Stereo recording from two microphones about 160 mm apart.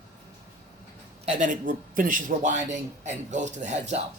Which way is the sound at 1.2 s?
55° right (ahead or behind).